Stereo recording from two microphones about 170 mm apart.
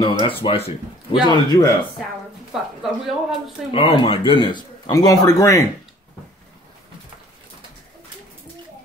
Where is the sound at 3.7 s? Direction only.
30° left (ahead or behind).